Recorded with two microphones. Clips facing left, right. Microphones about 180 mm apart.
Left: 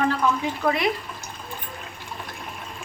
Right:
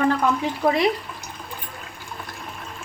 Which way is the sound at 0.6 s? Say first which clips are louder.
Right 3 dB; 20° right (ahead or behind).